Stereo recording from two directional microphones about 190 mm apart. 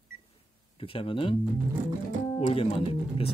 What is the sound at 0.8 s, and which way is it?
Speech, 30° left (ahead or behind).